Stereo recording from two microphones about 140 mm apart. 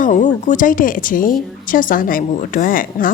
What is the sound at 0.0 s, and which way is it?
A woman's voice, 65° left (ahead or behind).